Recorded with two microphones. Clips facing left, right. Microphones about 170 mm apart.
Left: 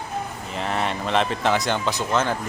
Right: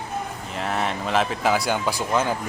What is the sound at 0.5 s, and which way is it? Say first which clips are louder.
Speech: even; centre (ahead or behind).